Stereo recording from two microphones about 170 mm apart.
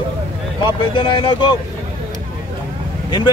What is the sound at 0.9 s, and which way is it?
Speech, 30° left (ahead or behind).